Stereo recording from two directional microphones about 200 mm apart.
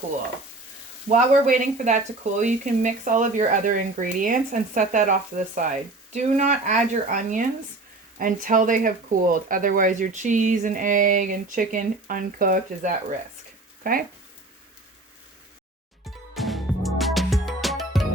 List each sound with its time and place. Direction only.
1.0 s speech: 40° right (ahead or behind)
16.0 s music: centre (ahead or behind)